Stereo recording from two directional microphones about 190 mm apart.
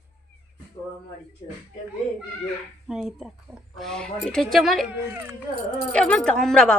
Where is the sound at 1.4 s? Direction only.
30° left (ahead or behind).